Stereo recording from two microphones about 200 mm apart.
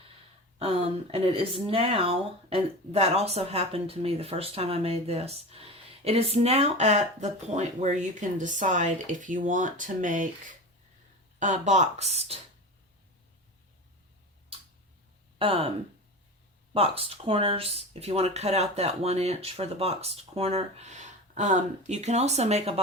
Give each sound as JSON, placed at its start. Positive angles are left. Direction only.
{"t": 0.6, "sound": "speech", "side_deg": -30}
{"t": 11.3, "sound": "speech", "side_deg": -40}
{"t": 15.4, "sound": "speech", "side_deg": -30}
{"t": 16.7, "sound": "speech", "side_deg": -30}